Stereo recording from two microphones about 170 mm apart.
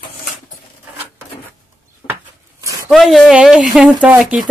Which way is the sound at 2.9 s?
Centre (ahead or behind).